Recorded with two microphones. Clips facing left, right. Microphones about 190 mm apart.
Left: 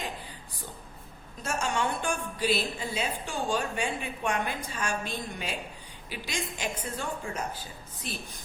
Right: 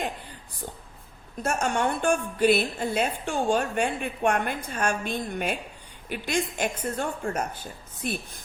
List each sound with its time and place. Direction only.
1.4 s a woman's voice: 55° right (ahead or behind)